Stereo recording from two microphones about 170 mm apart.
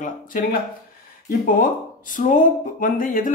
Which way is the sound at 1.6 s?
50° left (ahead or behind).